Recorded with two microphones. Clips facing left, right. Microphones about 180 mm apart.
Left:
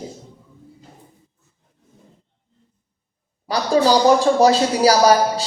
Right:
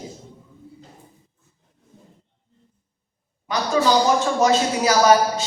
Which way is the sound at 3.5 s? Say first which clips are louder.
Left 3 dB; 35° left (ahead or behind).